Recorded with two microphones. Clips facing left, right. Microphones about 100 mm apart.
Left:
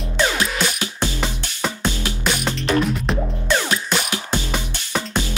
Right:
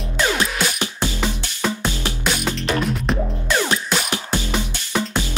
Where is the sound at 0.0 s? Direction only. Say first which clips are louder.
Even; centre (ahead or behind).